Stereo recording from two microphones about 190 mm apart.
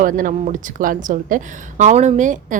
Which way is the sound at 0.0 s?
45° right (ahead or behind).